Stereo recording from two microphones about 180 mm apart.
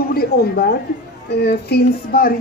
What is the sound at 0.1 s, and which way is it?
Speech, 60° left (ahead or behind).